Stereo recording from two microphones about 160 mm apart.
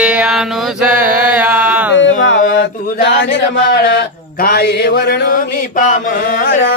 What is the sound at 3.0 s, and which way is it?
Speech, 90° left.